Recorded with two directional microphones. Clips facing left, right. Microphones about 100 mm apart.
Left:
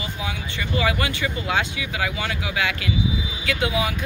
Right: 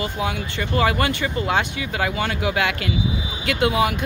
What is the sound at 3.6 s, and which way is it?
Speech, 55° right (ahead or behind).